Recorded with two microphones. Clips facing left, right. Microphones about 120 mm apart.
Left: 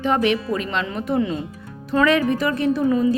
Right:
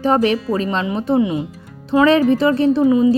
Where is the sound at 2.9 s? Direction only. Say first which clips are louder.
Right 4 dB; 15° right (ahead or behind).